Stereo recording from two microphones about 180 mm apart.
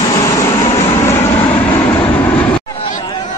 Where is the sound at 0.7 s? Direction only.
30° left (ahead or behind).